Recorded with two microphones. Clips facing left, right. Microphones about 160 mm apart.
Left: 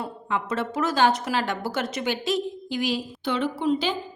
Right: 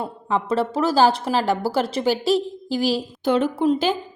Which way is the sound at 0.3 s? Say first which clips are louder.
Right 6 dB; 35° right (ahead or behind).